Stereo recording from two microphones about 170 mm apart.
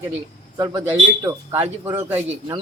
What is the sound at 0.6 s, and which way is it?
Speech, 20° right (ahead or behind).